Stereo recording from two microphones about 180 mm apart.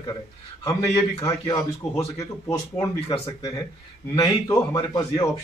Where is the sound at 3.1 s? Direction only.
25° left (ahead or behind).